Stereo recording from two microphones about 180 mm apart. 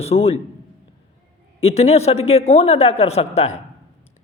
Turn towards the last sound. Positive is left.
turn(degrees=35)  # may be behind; listen again after turning